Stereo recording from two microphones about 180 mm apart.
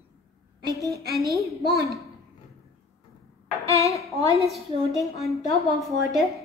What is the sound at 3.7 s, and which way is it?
Speech, 15° left (ahead or behind).